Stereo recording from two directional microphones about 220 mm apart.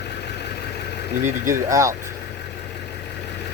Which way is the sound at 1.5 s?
15° right (ahead or behind).